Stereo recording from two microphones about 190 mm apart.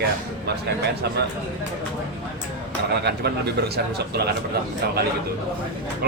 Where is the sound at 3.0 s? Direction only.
60° right (ahead or behind).